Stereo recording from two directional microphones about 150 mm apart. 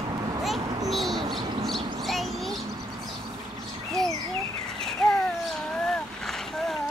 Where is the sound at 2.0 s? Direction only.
Centre (ahead or behind).